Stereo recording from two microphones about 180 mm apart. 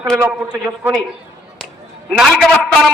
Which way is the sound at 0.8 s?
10° right (ahead or behind).